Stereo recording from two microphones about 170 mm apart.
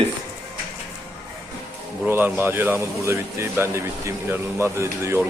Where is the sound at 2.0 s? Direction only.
15° right (ahead or behind).